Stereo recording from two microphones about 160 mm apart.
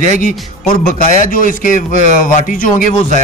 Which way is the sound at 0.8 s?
55° left (ahead or behind).